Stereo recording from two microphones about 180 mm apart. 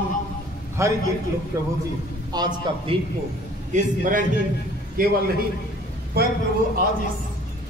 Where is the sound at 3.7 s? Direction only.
45° right (ahead or behind).